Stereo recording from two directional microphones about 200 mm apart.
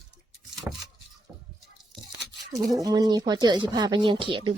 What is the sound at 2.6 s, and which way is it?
Speech, 15° right (ahead or behind).